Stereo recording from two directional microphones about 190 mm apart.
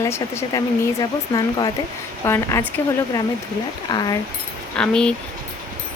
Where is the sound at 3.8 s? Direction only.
20° left (ahead or behind).